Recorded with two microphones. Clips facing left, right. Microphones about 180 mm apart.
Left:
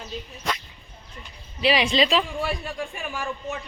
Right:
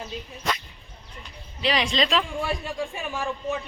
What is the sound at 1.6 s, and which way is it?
Speech, 5° left (ahead or behind).